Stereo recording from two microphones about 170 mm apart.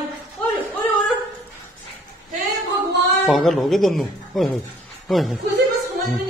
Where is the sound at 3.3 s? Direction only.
Centre (ahead or behind).